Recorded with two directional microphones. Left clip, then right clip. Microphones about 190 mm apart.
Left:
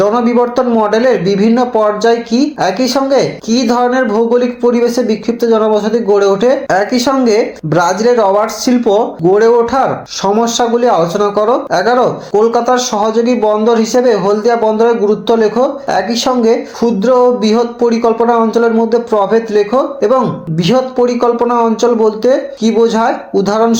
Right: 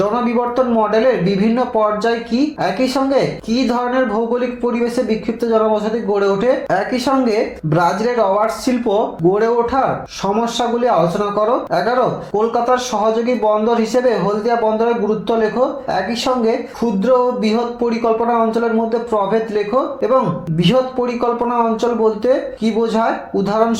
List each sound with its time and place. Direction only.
0.0 s a man's voice: 40° left (ahead or behind)